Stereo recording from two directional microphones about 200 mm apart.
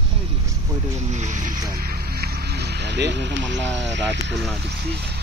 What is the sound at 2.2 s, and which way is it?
Speech, 55° right (ahead or behind).